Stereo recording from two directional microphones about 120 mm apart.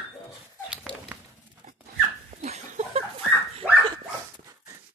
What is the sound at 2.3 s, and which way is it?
Laughter, 65° right (ahead or behind).